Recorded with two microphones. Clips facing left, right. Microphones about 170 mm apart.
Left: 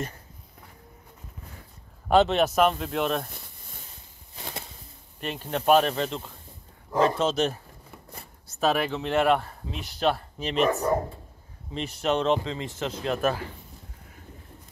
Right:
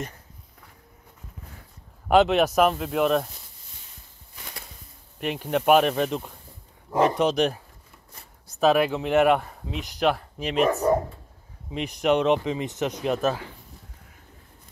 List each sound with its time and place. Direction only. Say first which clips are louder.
2.0 s speech: right 2 dB; 10° right (ahead or behind)
5.2 s speech: right 4 dB; 15° right (ahead or behind)
8.5 s speech: right 5 dB; 5° right (ahead or behind)
11.7 s speech: right 4 dB; 15° right (ahead or behind)